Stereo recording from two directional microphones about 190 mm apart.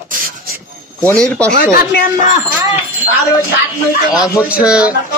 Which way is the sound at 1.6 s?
50° left (ahead or behind).